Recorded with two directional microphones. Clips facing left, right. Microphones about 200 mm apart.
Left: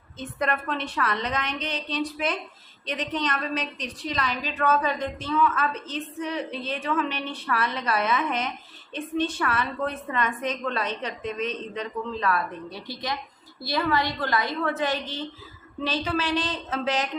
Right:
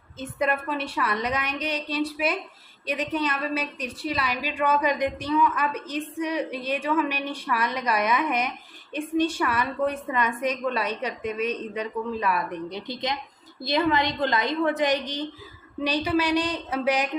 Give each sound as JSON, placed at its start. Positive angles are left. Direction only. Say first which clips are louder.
{"t": 0.2, "sound": "a woman's voice", "louder": "right 2 dB", "side_deg": -10}